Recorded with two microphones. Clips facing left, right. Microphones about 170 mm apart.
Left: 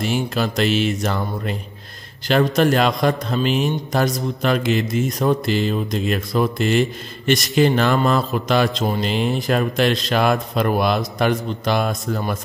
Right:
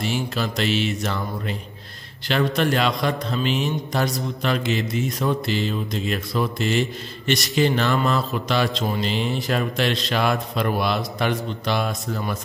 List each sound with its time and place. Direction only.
0.0 s a man's voice: 50° left (ahead or behind)